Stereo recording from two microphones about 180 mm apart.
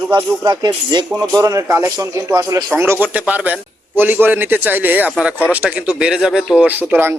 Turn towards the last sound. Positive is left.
turn(degrees=-10)  # may be behind; listen again after turning